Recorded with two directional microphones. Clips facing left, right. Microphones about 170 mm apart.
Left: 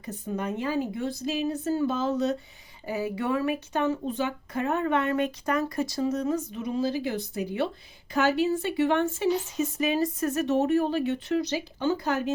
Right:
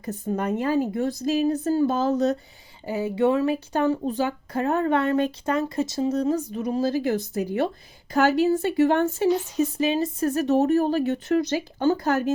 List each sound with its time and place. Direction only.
0.0 s speech: 45° right (ahead or behind)
2.8 s speech: 25° right (ahead or behind); by 12.3 s 45° right (ahead or behind)